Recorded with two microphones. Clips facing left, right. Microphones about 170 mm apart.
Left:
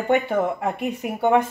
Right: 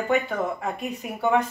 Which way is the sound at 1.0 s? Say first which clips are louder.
Left 3 dB; 60° left (ahead or behind).